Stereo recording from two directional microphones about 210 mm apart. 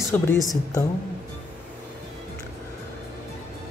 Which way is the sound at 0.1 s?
10° left (ahead or behind).